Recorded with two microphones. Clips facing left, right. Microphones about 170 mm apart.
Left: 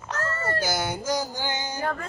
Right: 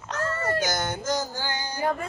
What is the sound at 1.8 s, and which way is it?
Music, 15° right (ahead or behind).